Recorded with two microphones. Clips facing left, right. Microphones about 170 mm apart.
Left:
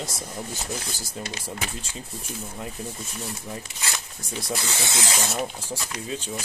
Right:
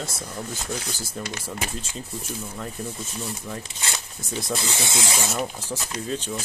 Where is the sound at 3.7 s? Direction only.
25° right (ahead or behind).